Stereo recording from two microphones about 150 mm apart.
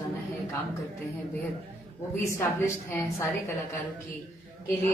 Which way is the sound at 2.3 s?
15° left (ahead or behind).